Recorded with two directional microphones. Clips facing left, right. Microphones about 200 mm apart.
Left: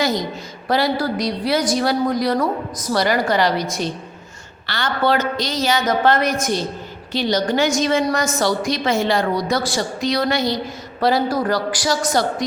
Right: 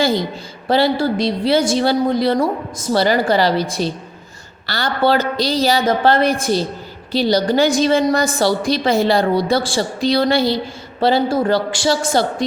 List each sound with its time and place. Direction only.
0.0 s a woman's voice: 30° right (ahead or behind)